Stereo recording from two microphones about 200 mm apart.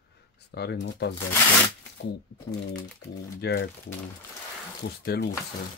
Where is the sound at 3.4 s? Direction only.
50° left (ahead or behind).